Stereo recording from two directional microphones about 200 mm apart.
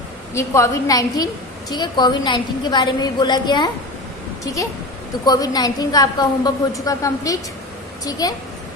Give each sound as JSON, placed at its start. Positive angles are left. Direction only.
{"t": 0.3, "sound": "a woman's voice", "side_deg": 15}
{"t": 5.2, "sound": "a woman's voice", "side_deg": 20}